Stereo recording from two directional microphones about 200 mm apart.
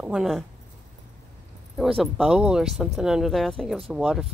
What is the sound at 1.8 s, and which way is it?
Speech, centre (ahead or behind).